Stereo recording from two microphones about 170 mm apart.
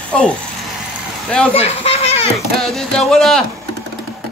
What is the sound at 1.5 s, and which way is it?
Speech, 35° left (ahead or behind).